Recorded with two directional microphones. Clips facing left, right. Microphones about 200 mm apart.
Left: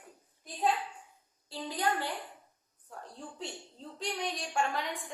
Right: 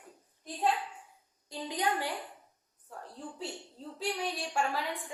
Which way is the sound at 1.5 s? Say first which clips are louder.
Even; 15° right (ahead or behind).